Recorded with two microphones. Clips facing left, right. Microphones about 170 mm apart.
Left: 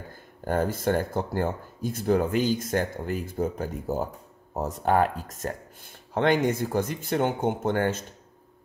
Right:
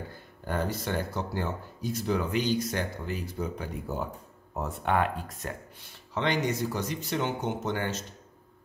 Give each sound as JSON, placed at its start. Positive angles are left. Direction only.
{"t": 0.1, "sound": "speech", "side_deg": 45}